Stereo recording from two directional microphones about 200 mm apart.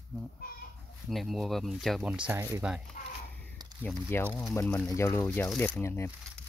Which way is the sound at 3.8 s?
10° left (ahead or behind).